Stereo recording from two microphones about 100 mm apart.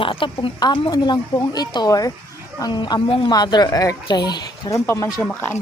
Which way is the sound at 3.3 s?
45° left (ahead or behind).